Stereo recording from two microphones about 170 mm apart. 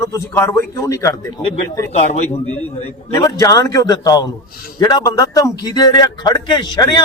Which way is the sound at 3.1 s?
20° left (ahead or behind).